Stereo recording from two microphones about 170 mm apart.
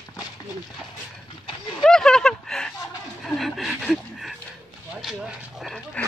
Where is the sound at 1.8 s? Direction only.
5° left (ahead or behind).